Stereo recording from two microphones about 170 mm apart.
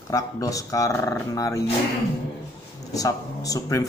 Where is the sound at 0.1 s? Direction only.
20° left (ahead or behind).